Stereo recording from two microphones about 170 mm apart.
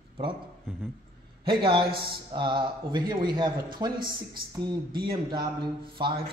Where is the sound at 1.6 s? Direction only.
30° right (ahead or behind).